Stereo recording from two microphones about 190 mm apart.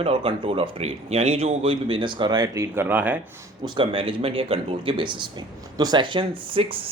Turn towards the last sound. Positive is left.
turn(degrees=-30)  # may be behind; listen again after turning